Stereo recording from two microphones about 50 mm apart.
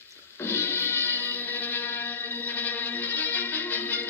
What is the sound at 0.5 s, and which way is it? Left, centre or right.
Music, left.